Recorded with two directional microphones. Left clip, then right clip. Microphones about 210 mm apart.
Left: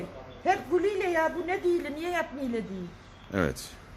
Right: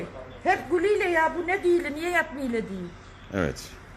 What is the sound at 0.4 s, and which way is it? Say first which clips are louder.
Speech: right 3 dB; 5° right (ahead or behind).